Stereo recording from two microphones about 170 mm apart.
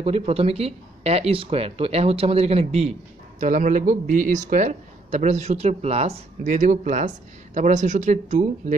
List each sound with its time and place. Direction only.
0.0 s speech: 35° right (ahead or behind)
3.3 s speech: 50° right (ahead or behind)